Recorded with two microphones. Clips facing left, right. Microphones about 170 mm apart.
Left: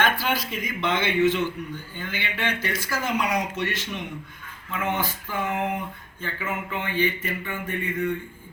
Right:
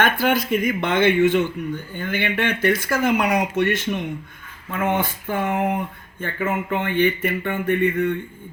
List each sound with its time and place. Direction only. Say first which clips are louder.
0.0 s a man's voice: right 5 dB; 50° right (ahead or behind)